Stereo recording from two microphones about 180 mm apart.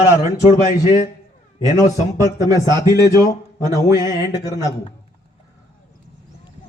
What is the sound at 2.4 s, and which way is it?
Speech, 20° left (ahead or behind).